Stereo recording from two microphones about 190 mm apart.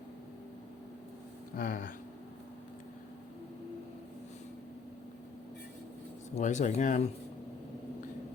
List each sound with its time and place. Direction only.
1.5 s speech: 45° left (ahead or behind)
6.3 s speech: 40° left (ahead or behind)